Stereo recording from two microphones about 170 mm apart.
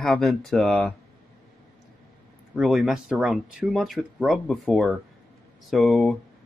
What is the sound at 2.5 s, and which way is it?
Speech, centre (ahead or behind).